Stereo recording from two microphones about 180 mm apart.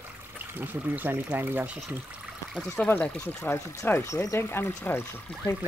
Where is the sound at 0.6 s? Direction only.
10° right (ahead or behind).